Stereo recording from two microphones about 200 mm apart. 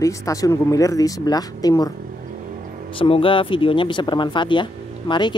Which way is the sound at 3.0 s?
25° left (ahead or behind).